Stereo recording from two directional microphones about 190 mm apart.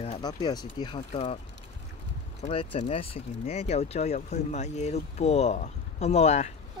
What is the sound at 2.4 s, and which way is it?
Speech, 30° left (ahead or behind).